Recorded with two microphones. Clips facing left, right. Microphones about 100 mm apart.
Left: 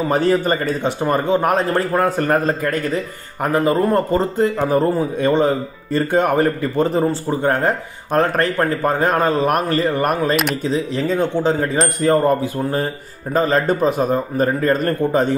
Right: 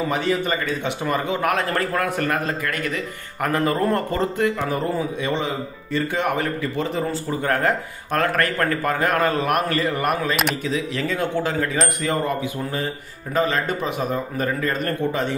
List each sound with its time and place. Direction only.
0.1 s a man's voice: 40° left (ahead or behind)
3.4 s speech: 20° left (ahead or behind)
4.6 s speech: 40° left (ahead or behind)
7.4 s a man's voice: 25° left (ahead or behind); by 15.3 s 40° left (ahead or behind)